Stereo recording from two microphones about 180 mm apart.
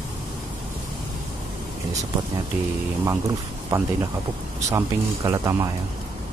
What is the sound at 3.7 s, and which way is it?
Speech, 15° right (ahead or behind).